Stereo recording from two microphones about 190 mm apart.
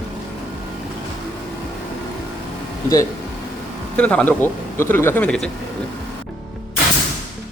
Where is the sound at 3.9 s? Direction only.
5° left (ahead or behind).